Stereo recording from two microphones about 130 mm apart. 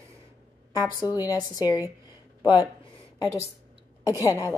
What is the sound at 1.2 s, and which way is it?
Speech, 30° left (ahead or behind).